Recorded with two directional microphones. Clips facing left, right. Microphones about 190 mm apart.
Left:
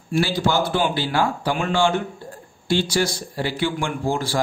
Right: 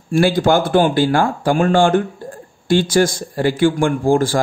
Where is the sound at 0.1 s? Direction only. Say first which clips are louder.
Right 7 dB; 50° right (ahead or behind).